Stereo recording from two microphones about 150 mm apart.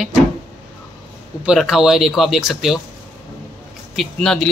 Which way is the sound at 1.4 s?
Centre (ahead or behind).